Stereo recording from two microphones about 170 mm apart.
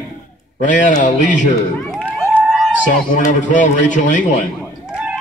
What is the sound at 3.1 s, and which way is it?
A man's voice, 50° left (ahead or behind).